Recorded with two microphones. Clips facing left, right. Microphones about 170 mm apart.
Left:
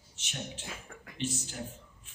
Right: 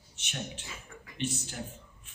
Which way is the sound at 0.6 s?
55° left (ahead or behind).